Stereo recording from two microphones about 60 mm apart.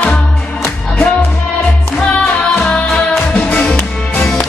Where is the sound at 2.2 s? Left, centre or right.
Centre.